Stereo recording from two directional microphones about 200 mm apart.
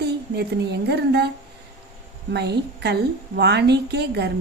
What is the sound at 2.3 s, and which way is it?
A woman's voice, 60° right (ahead or behind).